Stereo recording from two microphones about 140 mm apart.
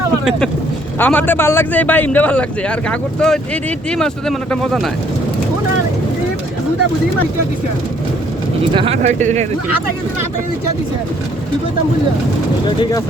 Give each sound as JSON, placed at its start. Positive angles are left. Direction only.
{"t": 0.3, "sound": "a man's voice", "side_deg": 5}
{"t": 8.7, "sound": "speech", "side_deg": -40}
{"t": 9.0, "sound": "speech", "side_deg": -60}